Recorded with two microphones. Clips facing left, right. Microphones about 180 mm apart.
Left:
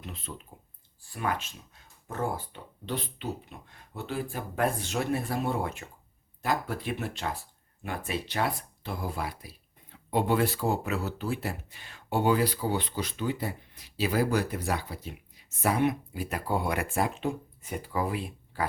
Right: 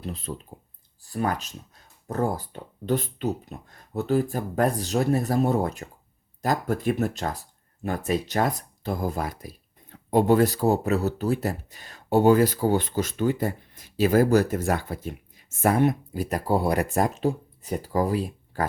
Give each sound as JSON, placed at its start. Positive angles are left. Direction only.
{"t": 0.0, "sound": "speech", "side_deg": -35}